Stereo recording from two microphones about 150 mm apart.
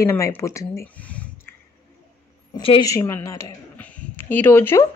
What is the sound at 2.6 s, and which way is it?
Speech, 35° left (ahead or behind).